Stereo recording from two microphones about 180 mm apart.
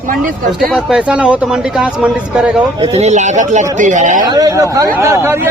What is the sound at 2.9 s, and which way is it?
Speech, 40° right (ahead or behind).